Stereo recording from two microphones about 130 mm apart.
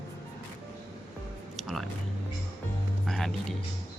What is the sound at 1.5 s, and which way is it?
Music, centre (ahead or behind).